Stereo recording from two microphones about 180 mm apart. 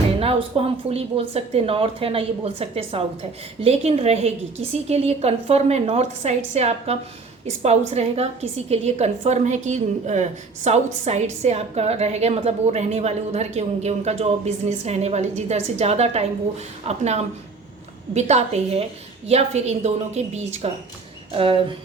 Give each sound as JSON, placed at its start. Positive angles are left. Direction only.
{"t": 0.2, "sound": "a woman's voice", "side_deg": -30}